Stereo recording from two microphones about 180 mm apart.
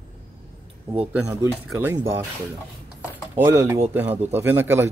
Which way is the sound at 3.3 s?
15° right (ahead or behind).